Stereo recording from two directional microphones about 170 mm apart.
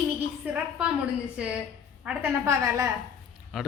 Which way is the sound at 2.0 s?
10° right (ahead or behind).